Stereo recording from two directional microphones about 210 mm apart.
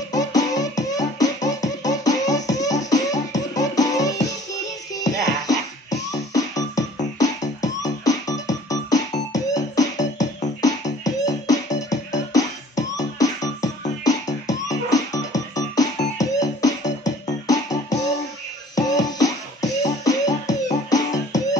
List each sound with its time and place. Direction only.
0.1 s music: 15° left (ahead or behind)